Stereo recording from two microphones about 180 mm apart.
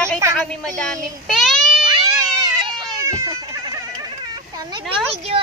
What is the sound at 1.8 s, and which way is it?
Cat, 25° right (ahead or behind).